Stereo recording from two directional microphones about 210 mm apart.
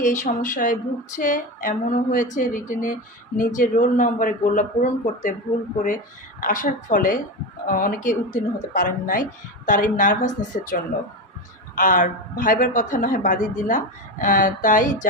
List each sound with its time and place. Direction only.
0.0 s speech: 35° left (ahead or behind)
6.4 s speech: 40° left (ahead or behind)